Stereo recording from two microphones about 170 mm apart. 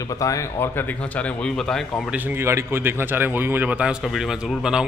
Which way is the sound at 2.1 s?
10° right (ahead or behind).